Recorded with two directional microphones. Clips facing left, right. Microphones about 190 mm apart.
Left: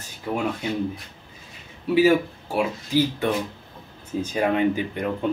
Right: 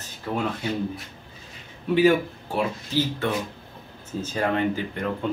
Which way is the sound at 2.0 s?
10° left (ahead or behind).